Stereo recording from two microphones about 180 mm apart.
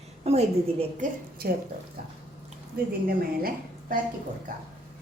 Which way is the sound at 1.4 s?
55° right (ahead or behind).